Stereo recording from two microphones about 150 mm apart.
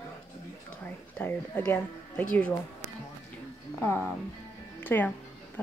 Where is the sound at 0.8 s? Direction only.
10° left (ahead or behind).